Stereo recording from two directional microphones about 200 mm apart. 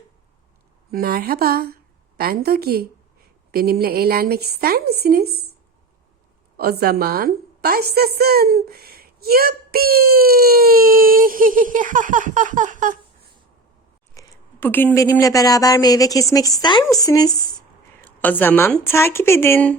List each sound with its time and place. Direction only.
0.9 s a woman's voice: 50° right (ahead or behind)
6.6 s a woman's voice: 50° right (ahead or behind)
14.1 s speech: 15° left (ahead or behind)